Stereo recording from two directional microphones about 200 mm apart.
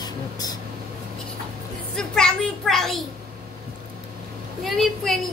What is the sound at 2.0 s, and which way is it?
A child's voice, 5° left (ahead or behind).